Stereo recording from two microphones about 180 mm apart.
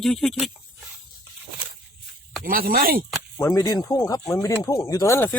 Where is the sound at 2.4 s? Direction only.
50° right (ahead or behind).